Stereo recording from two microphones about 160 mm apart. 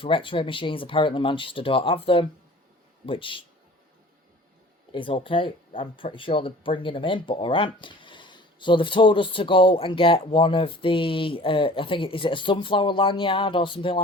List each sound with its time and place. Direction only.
0.0 s speech: 35° left (ahead or behind)
4.9 s speech: 35° left (ahead or behind)